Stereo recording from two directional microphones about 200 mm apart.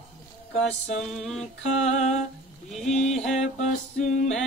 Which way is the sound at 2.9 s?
35° left (ahead or behind).